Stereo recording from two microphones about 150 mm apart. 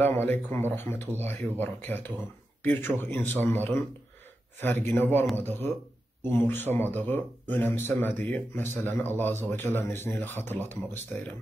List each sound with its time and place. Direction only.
0.0 s speech: 15° left (ahead or behind)